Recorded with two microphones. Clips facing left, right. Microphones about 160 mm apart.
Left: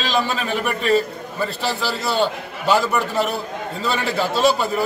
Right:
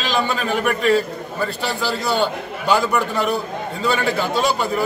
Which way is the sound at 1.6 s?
Centre (ahead or behind).